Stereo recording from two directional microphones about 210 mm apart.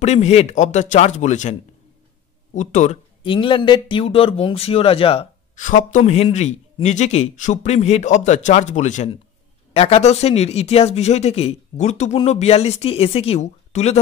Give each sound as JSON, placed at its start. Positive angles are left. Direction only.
{"t": 0.0, "sound": "a man's voice", "side_deg": 30}
{"t": 3.2, "sound": "a man's voice", "side_deg": 25}